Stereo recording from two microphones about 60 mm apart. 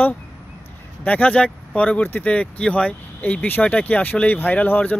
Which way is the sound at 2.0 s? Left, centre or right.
Left.